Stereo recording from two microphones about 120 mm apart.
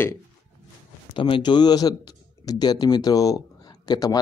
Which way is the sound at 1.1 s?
45° left (ahead or behind).